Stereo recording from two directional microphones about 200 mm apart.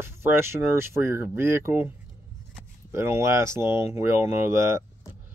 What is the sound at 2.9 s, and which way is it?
Speech, 15° right (ahead or behind).